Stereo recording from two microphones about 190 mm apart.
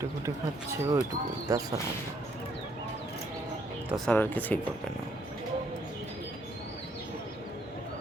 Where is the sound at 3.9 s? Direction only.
5° left (ahead or behind).